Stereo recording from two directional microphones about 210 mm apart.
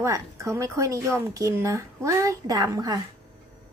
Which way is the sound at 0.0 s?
15° right (ahead or behind).